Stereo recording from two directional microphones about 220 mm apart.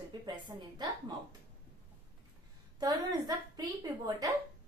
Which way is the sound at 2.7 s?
20° right (ahead or behind).